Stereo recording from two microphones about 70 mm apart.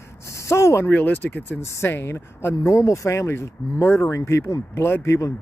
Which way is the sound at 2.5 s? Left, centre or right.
Left.